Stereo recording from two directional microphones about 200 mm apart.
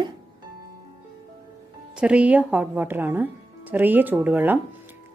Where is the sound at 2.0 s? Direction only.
5° right (ahead or behind).